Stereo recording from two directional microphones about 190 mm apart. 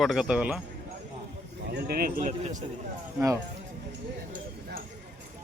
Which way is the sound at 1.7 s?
55° right (ahead or behind).